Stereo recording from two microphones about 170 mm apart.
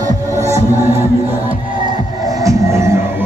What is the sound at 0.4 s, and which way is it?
Music, 15° right (ahead or behind).